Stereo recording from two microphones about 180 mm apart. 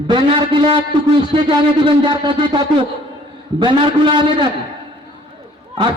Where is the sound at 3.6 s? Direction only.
25° right (ahead or behind).